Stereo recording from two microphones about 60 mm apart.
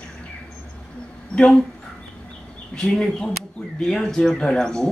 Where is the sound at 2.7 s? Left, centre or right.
Centre.